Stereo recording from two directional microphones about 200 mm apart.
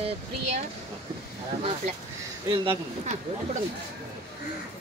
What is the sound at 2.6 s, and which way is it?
Speech, 25° right (ahead or behind).